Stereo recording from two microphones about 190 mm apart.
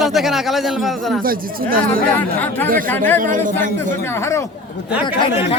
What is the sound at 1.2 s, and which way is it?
Speech, 50° right (ahead or behind).